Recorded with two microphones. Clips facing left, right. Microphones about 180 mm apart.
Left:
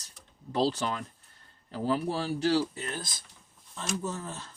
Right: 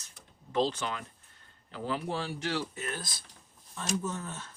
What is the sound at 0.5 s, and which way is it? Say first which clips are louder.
Speech: left 2 dB; 35° left (ahead or behind).